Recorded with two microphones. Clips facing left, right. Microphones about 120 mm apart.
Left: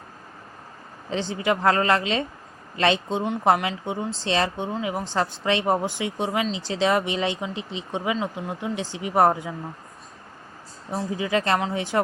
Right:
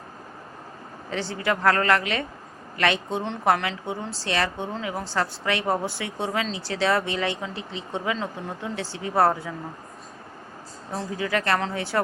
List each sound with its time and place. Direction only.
1.1 s speech: 20° left (ahead or behind)
10.9 s speech: 20° left (ahead or behind)